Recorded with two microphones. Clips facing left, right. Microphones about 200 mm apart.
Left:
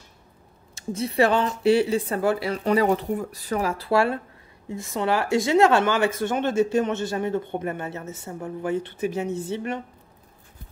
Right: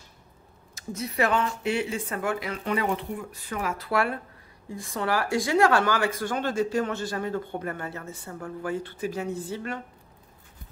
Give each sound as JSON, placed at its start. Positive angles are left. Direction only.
{"t": 0.7, "sound": "speech", "side_deg": 30}